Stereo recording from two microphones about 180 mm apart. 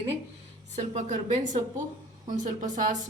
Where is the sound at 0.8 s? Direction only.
40° right (ahead or behind).